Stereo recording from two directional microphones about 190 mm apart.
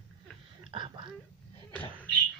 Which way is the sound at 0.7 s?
25° right (ahead or behind).